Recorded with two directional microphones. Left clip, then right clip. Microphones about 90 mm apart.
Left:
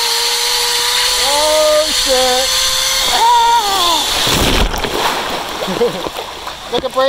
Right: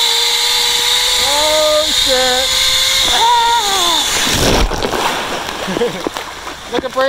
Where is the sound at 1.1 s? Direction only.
30° right (ahead or behind).